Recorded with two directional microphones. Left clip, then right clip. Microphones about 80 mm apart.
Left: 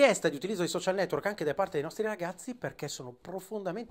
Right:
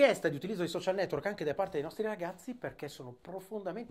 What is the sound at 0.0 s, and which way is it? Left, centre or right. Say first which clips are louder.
Speech: left 2 dB; left.